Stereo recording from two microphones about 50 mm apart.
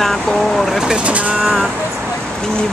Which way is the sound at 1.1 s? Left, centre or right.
Right.